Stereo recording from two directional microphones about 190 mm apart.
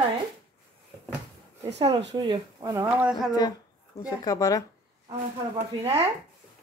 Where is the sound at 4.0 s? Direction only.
20° left (ahead or behind).